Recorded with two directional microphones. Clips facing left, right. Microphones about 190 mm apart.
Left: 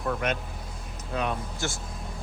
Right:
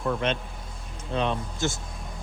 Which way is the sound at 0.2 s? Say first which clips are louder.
Right 2 dB; 25° right (ahead or behind).